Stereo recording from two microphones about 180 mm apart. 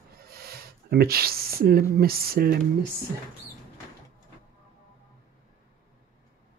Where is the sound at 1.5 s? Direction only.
55° right (ahead or behind).